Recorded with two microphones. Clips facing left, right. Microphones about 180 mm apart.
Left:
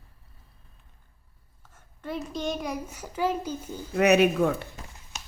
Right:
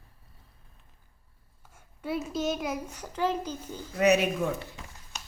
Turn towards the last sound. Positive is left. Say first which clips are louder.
# left 6 dB
turn(degrees=60)  # may be behind; listen again after turning